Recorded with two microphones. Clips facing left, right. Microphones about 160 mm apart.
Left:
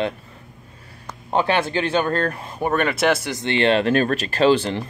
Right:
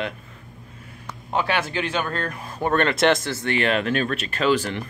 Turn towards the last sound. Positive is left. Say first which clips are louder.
# left 4 dB
turn(degrees=30)  # may be behind; listen again after turning